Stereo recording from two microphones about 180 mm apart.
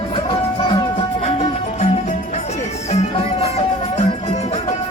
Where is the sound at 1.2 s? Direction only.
35° left (ahead or behind).